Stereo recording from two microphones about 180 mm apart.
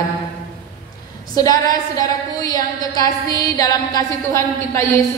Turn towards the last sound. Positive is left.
turn(degrees=15)  # may be behind; listen again after turning